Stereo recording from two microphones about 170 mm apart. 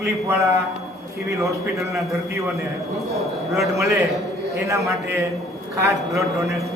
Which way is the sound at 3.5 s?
Centre (ahead or behind).